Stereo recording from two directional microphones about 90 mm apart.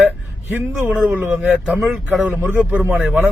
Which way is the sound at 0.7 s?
15° right (ahead or behind).